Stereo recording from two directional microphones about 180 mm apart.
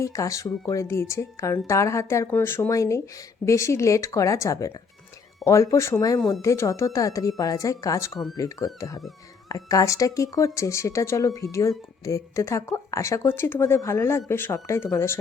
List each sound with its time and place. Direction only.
0.0 s speech: 20° left (ahead or behind)